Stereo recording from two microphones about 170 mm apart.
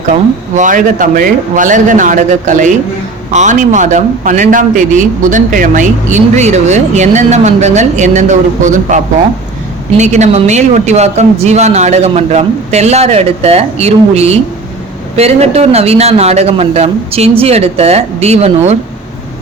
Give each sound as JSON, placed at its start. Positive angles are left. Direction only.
{"t": 0.5, "sound": "a man's voice", "side_deg": -50}
{"t": 10.0, "sound": "speech", "side_deg": -45}